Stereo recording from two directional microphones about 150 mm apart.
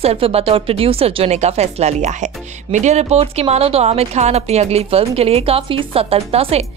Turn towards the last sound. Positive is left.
turn(degrees=-40)  # may be behind; listen again after turning